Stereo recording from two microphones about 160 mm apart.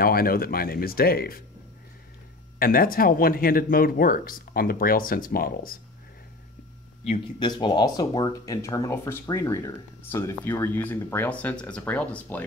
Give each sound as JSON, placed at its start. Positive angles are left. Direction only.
{"t": 0.0, "sound": "speech", "side_deg": 65}
{"t": 2.6, "sound": "speech", "side_deg": 65}
{"t": 7.3, "sound": "speech", "side_deg": 30}